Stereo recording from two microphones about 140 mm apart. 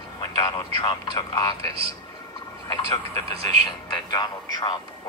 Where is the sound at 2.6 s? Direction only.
25° left (ahead or behind).